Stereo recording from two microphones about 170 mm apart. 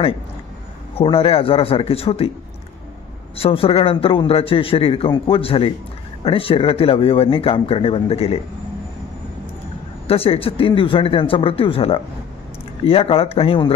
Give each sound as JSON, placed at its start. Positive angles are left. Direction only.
{"t": 0.9, "sound": "a man's voice", "side_deg": 35}
{"t": 3.3, "sound": "a man's voice", "side_deg": 35}
{"t": 10.0, "sound": "a man's voice", "side_deg": 35}